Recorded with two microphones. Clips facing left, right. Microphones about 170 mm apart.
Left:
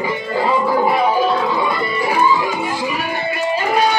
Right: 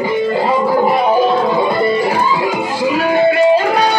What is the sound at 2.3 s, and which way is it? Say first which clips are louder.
Music: right 3 dB; 75° right (ahead or behind).